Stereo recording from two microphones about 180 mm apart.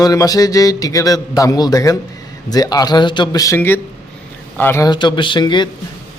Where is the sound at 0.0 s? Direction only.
20° left (ahead or behind).